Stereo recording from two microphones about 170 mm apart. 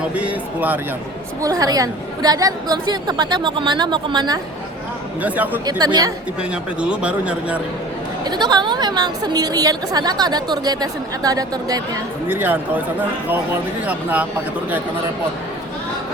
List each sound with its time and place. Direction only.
0.1 s a man's voice: 10° right (ahead or behind)
1.4 s a woman's voice: 20° right (ahead or behind)
5.2 s a man's voice: 10° right (ahead or behind)
5.6 s a woman's voice: 25° right (ahead or behind)
6.4 s a man's voice: 5° right (ahead or behind)
8.2 s a woman's voice: 25° right (ahead or behind)
12.3 s a man's voice: 10° right (ahead or behind)
13.8 s a man's voice: 10° right (ahead or behind)